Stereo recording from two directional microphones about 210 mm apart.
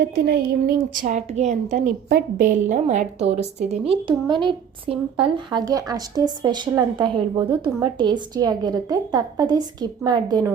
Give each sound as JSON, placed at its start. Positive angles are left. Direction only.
{"t": 0.0, "sound": "a woman's voice", "side_deg": -50}
{"t": 2.0, "sound": "a woman's voice", "side_deg": -45}